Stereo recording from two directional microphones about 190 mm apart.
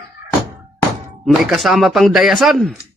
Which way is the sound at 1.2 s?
Centre (ahead or behind).